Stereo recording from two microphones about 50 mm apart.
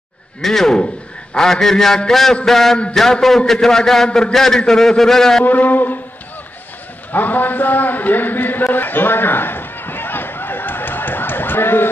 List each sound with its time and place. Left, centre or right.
0.4 s a man's voice: centre
5.4 s speech: left
7.1 s a man's voice: left
8.7 s a sound: left